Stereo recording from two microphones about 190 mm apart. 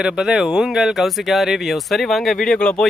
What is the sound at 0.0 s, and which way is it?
Speech, 5° right (ahead or behind).